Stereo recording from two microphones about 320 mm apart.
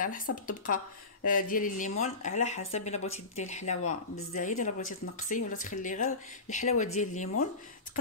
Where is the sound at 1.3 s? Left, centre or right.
Left.